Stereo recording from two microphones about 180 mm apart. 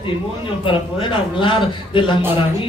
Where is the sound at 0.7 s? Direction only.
25° left (ahead or behind).